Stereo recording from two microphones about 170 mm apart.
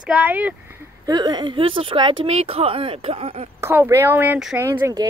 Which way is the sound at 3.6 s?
15° right (ahead or behind).